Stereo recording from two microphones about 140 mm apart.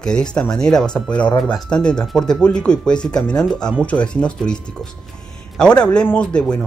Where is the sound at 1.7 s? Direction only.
5° left (ahead or behind).